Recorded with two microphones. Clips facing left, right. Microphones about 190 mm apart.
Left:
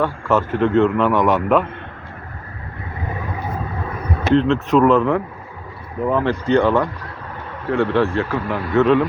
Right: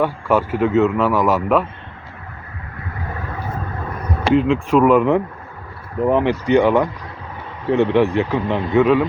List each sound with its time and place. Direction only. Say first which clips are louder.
0.0 s a man's voice: right 1 dB; 10° right (ahead or behind)
4.4 s speech: even; 10° right (ahead or behind)